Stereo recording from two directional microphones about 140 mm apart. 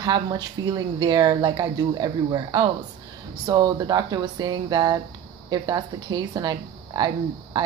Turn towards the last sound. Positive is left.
turn(degrees=-30)  # may be behind; listen again after turning